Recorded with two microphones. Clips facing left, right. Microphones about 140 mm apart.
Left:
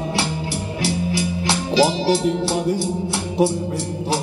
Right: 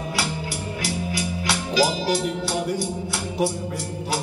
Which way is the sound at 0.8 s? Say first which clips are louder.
Left 6 dB; 30° left (ahead or behind).